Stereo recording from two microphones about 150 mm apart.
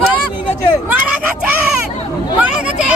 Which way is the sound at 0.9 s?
10° right (ahead or behind).